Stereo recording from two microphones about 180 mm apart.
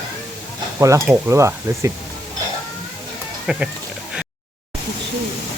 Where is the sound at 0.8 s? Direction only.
20° right (ahead or behind).